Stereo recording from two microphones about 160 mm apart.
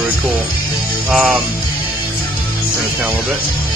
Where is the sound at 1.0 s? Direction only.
10° right (ahead or behind).